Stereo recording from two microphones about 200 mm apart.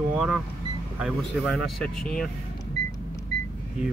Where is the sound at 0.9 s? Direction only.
Centre (ahead or behind).